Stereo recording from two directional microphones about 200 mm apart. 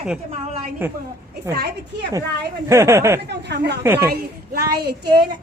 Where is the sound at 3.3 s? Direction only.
55° right (ahead or behind).